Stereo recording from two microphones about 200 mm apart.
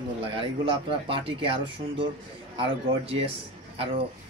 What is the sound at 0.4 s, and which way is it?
A man's voice, 25° right (ahead or behind).